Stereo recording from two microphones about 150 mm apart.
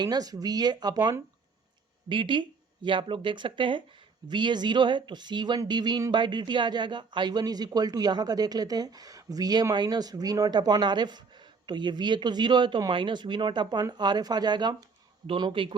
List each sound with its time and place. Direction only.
0.0 s speech: 25° right (ahead or behind)